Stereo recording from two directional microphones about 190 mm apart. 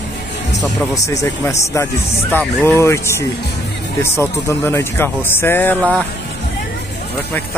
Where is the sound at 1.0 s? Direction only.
15° left (ahead or behind).